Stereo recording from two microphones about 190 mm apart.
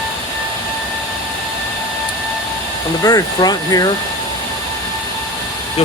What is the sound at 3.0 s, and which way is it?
Speech, 20° left (ahead or behind).